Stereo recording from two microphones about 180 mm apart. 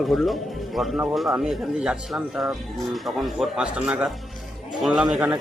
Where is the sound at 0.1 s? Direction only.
Centre (ahead or behind).